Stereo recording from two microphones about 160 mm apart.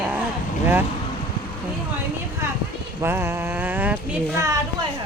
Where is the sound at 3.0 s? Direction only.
15° right (ahead or behind).